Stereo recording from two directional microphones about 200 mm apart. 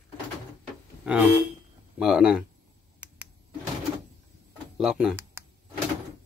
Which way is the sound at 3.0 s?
10° right (ahead or behind).